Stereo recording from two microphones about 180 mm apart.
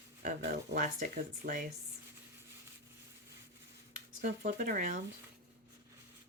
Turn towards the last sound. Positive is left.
turn(degrees=-50)  # may be behind; listen again after turning